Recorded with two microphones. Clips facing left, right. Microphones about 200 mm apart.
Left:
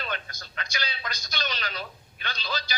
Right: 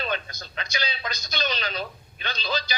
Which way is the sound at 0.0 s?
20° right (ahead or behind).